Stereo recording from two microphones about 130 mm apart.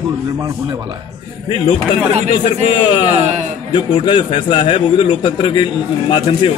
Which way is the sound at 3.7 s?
35° left (ahead or behind).